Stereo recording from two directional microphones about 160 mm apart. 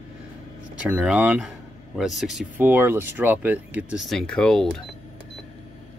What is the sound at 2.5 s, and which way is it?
Speech, 10° right (ahead or behind).